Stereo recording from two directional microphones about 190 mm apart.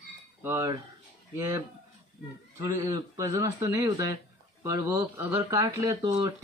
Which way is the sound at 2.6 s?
15° right (ahead or behind).